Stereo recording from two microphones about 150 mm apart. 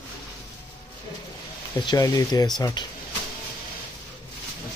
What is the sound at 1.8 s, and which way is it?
Speech, 25° left (ahead or behind).